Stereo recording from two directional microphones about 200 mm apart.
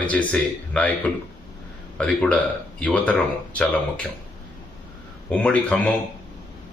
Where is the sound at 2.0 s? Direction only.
5° left (ahead or behind).